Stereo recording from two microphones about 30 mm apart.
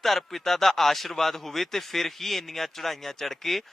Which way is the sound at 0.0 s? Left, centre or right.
Centre.